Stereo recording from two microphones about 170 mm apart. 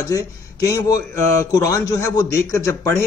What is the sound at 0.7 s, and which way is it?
A man's voice, 20° left (ahead or behind).